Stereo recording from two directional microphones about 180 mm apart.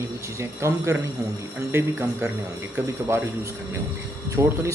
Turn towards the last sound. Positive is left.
turn(degrees=-15)  # may be behind; listen again after turning